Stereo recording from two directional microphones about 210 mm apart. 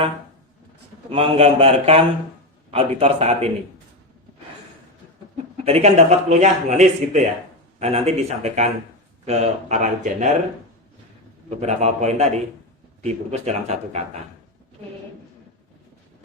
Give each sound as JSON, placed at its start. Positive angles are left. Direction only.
{"t": 1.1, "sound": "a man's voice", "side_deg": -25}
{"t": 5.6, "sound": "speech", "side_deg": -30}
{"t": 11.6, "sound": "speech", "side_deg": -35}